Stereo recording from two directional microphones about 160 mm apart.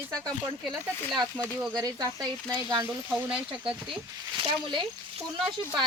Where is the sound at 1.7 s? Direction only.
20° right (ahead or behind).